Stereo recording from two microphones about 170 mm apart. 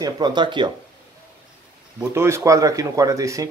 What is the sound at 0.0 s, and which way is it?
Speech, 25° right (ahead or behind).